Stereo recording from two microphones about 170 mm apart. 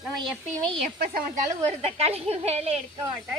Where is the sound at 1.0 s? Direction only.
60° right (ahead or behind).